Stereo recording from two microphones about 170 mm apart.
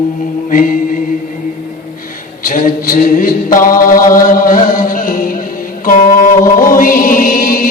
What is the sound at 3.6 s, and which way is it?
Music, 55° left (ahead or behind).